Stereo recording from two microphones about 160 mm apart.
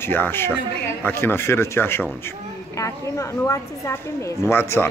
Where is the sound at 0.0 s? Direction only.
15° left (ahead or behind).